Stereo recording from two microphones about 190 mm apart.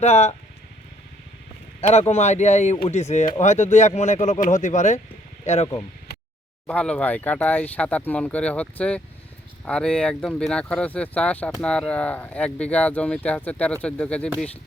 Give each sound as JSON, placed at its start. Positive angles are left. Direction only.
{"t": 0.0, "sound": "speech", "side_deg": 35}
{"t": 1.9, "sound": "speech", "side_deg": 35}
{"t": 6.7, "sound": "speech", "side_deg": 5}